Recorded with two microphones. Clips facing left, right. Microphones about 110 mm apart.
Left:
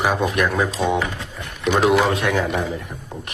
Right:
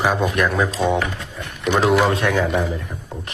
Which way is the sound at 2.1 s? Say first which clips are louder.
Right 1 dB; 20° left (ahead or behind).